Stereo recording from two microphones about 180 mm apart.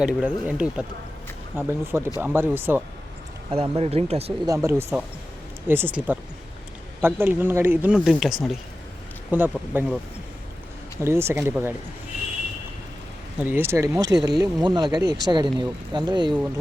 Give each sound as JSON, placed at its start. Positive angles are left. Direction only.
{"t": 0.0, "sound": "speech", "side_deg": -5}
{"t": 3.5, "sound": "speech", "side_deg": -30}
{"t": 4.4, "sound": "speech", "side_deg": -15}
{"t": 11.0, "sound": "speech", "side_deg": -15}
{"t": 13.4, "sound": "speech", "side_deg": -10}